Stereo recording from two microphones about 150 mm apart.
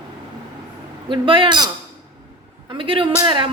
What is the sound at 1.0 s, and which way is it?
Speech, 35° right (ahead or behind).